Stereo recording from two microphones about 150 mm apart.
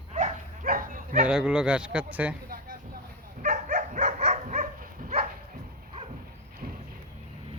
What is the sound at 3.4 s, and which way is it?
Dog, 55° right (ahead or behind).